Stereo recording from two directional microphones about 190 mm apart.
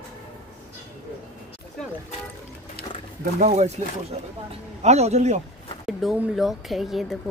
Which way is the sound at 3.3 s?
35° right (ahead or behind).